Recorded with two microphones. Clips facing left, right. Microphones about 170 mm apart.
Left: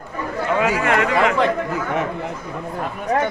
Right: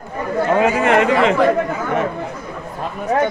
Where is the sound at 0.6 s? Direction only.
20° right (ahead or behind).